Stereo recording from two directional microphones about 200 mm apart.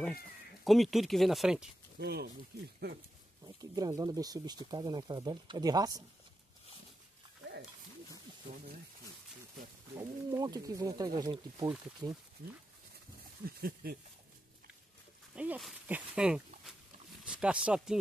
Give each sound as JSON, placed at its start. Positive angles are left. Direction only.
{"t": 0.7, "sound": "speech", "side_deg": 0}
{"t": 2.0, "sound": "speech", "side_deg": -55}
{"t": 3.4, "sound": "speech", "side_deg": -20}
{"t": 9.9, "sound": "speech", "side_deg": -20}
{"t": 13.5, "sound": "speech", "side_deg": -50}
{"t": 15.3, "sound": "speech", "side_deg": -5}